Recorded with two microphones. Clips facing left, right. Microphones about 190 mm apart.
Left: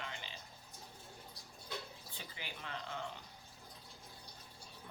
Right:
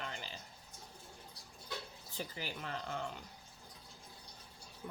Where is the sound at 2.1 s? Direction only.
40° right (ahead or behind).